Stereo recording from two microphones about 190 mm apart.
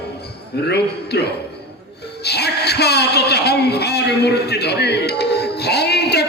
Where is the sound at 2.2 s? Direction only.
60° left (ahead or behind).